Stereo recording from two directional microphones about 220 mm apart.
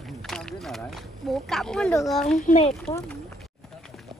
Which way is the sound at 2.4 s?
30° left (ahead or behind).